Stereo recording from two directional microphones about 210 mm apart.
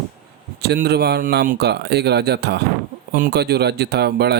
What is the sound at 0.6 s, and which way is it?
Speech, 50° right (ahead or behind).